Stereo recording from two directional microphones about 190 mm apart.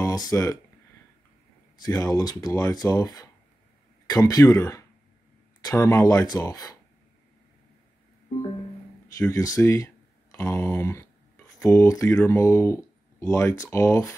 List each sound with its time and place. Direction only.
0.0 s speech: 20° left (ahead or behind)
1.8 s speech: 20° left (ahead or behind)
9.2 s speech: 15° left (ahead or behind)